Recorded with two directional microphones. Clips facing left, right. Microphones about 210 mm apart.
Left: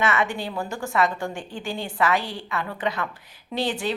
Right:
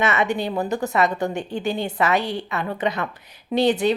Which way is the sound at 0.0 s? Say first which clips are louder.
Right 3 dB; 20° right (ahead or behind).